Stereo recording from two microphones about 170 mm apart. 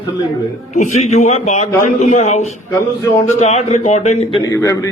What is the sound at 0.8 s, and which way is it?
A man's voice, 40° left (ahead or behind).